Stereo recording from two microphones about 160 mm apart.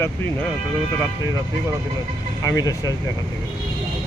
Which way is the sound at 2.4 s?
20° left (ahead or behind).